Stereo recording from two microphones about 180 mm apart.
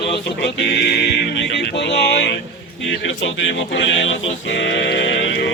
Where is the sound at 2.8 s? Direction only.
90° left.